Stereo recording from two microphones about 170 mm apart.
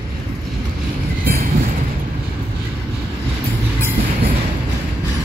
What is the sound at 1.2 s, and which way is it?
Train, 60° right (ahead or behind).